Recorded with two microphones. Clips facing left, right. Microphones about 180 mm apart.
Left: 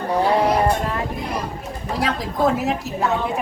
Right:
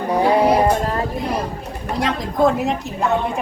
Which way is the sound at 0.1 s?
10° right (ahead or behind).